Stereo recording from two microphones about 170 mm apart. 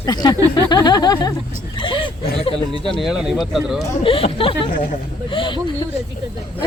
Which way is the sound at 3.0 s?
5° right (ahead or behind).